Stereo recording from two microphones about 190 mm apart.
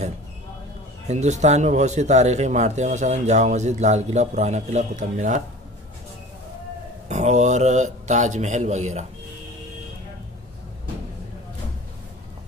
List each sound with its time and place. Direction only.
1.0 s a man's voice: 35° right (ahead or behind)
7.1 s a man's voice: 40° right (ahead or behind)